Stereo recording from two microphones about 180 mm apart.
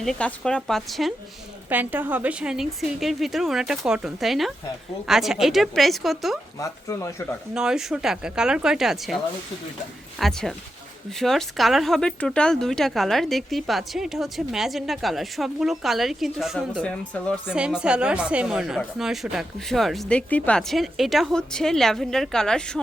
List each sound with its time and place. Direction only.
0.0 s speech: 5° left (ahead or behind)
1.7 s speech: 10° right (ahead or behind)
6.6 s speech: 20° left (ahead or behind)
7.5 s speech: 5° right (ahead or behind)
16.8 s speech: 5° left (ahead or behind)
17.5 s speech: 5° right (ahead or behind)